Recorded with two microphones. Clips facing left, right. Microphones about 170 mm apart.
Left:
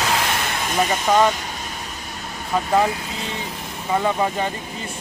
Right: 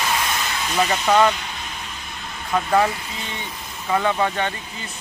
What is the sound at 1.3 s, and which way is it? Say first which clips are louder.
Vehicle: left 1 dB; 45° left (ahead or behind).